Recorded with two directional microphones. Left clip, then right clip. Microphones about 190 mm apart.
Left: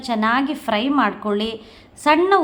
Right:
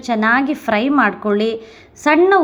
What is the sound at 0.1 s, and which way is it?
A woman's voice, 20° right (ahead or behind).